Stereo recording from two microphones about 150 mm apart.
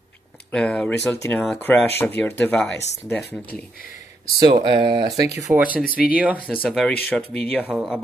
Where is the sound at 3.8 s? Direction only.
70° left (ahead or behind).